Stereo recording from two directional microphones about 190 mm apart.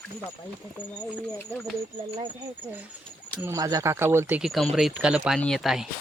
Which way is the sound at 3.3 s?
15° right (ahead or behind).